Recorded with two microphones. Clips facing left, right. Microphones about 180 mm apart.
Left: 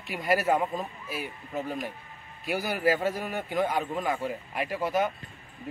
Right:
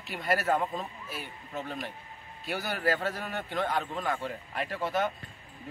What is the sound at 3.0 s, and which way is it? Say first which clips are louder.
Speech: left 4 dB; 20° left (ahead or behind).